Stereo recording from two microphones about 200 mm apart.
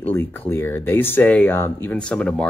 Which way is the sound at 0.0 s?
10° left (ahead or behind).